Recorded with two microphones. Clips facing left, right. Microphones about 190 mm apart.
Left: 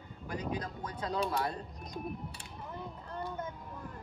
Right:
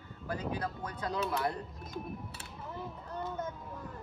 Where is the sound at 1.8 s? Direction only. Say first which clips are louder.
Left 3 dB; 5° right (ahead or behind).